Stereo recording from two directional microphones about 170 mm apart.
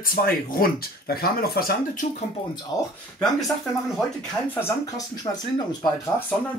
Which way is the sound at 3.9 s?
5° left (ahead or behind).